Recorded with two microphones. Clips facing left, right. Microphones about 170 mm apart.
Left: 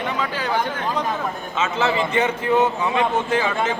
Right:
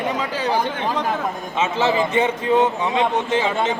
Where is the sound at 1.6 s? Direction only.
25° right (ahead or behind).